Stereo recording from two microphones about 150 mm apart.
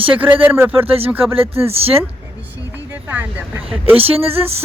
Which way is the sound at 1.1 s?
10° right (ahead or behind).